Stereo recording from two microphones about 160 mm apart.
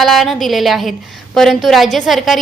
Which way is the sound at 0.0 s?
Centre (ahead or behind).